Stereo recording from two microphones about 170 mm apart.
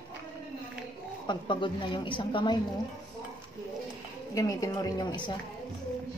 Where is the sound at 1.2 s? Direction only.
25° left (ahead or behind).